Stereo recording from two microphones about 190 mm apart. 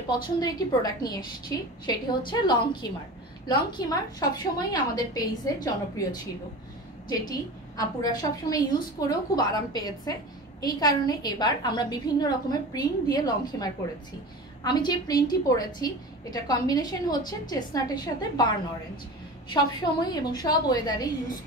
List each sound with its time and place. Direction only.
0.4 s a woman's voice: 20° left (ahead or behind)
7.1 s a woman's voice: 20° left (ahead or behind)
19.5 s a woman's voice: 20° left (ahead or behind)